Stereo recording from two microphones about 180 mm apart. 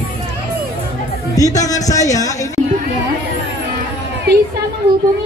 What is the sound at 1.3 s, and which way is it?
Speech, 20° left (ahead or behind).